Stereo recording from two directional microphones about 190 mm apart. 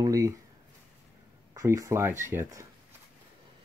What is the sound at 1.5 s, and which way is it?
Speech, 15° right (ahead or behind).